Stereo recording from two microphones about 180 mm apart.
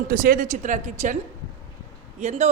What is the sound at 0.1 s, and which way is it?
Speech, 55° right (ahead or behind).